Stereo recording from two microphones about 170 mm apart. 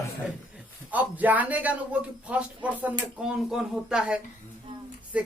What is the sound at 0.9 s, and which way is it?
Speech, 10° right (ahead or behind).